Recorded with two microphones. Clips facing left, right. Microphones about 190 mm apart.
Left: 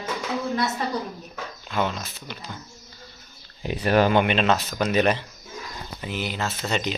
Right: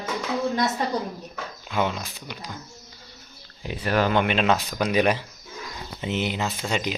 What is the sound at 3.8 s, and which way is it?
Speech, 20° left (ahead or behind).